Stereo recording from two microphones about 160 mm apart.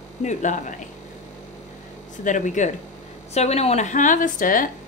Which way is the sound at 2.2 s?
50° left (ahead or behind).